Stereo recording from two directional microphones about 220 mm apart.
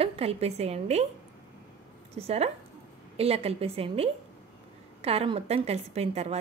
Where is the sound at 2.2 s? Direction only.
25° right (ahead or behind).